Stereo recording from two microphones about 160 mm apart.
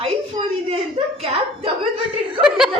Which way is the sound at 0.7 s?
35° right (ahead or behind).